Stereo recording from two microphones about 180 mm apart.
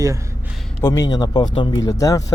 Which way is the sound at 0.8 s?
20° left (ahead or behind).